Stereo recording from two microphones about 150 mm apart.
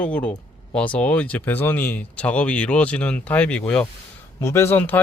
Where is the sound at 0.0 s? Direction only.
10° left (ahead or behind).